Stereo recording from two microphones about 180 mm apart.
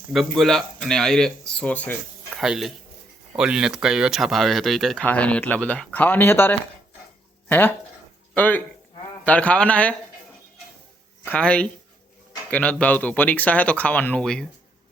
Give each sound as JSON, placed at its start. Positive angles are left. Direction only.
{"t": 0.1, "sound": "speech", "side_deg": 0}
{"t": 2.4, "sound": "speech", "side_deg": 0}
{"t": 11.3, "sound": "speech", "side_deg": 5}